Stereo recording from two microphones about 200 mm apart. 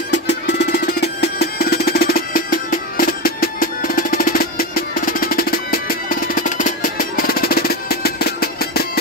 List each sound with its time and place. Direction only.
0.1 s music: 60° left (ahead or behind)